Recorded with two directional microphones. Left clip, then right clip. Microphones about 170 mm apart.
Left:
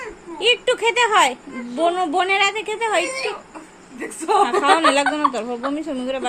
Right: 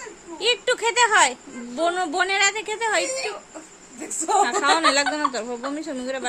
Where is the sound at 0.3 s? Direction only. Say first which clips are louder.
Left 4 dB; 5° left (ahead or behind).